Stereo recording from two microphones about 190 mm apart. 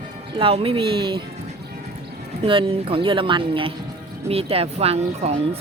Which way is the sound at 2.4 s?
25° right (ahead or behind).